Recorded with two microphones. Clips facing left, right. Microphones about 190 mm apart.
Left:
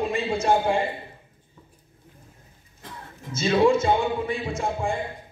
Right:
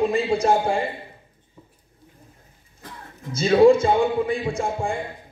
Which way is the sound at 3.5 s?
35° right (ahead or behind).